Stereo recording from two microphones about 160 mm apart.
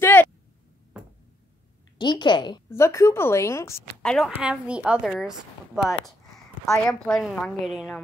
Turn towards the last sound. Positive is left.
turn(degrees=0)  # may be behind; listen again after turning